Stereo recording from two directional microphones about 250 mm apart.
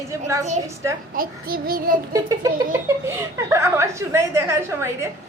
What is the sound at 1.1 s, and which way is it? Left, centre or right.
Speech, right.